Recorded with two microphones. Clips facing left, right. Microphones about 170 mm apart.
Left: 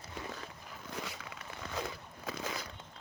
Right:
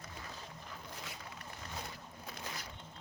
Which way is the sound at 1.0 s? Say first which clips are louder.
Left 5 dB; 90° left.